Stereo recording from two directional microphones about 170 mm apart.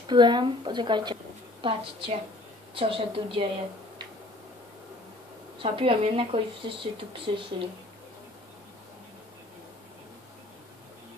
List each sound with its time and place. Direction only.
0.1 s speech: 25° right (ahead or behind)
5.6 s speech: 30° right (ahead or behind)